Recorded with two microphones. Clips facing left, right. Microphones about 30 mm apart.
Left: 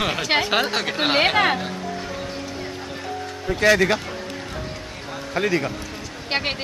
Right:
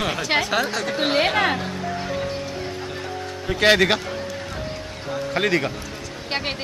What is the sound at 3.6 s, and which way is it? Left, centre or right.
Speech, right.